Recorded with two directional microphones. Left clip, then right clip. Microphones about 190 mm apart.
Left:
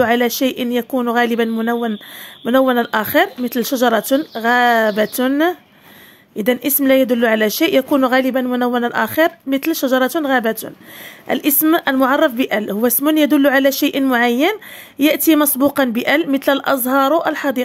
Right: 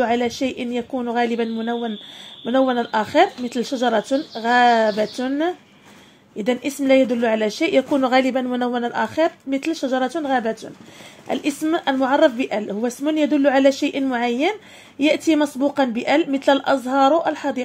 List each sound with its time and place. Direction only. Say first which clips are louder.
0.0 s a woman's voice: left 5 dB; 35° left (ahead or behind)